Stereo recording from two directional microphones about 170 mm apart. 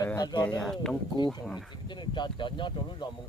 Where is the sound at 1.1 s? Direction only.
25° left (ahead or behind).